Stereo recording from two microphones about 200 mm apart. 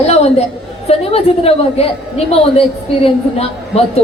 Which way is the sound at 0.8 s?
30° left (ahead or behind).